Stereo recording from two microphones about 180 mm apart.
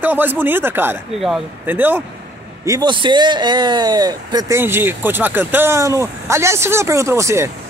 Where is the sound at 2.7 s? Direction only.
25° right (ahead or behind).